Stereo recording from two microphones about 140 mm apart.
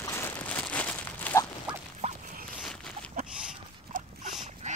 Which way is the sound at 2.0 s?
55° right (ahead or behind).